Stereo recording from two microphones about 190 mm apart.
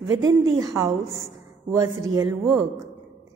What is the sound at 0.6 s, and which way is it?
A child's voice, 20° right (ahead or behind).